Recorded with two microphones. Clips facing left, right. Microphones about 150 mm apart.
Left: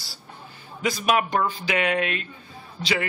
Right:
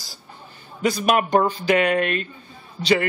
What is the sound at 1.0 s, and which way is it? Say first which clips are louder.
Speech: right 4 dB; 45° right (ahead or behind).